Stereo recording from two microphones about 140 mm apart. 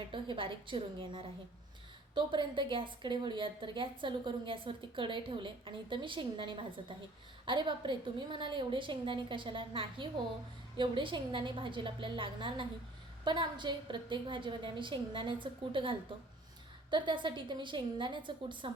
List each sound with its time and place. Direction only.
0.1 s a woman's voice: 35° right (ahead or behind)